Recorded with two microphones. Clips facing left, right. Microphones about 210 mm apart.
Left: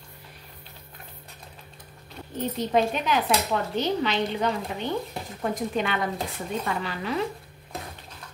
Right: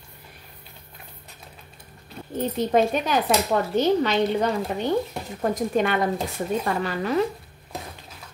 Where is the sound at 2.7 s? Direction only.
45° right (ahead or behind).